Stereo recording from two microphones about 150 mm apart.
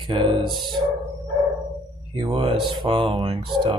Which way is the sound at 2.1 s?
35° right (ahead or behind).